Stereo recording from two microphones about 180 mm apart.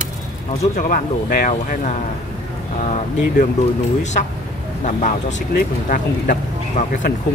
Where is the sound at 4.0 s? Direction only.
40° left (ahead or behind).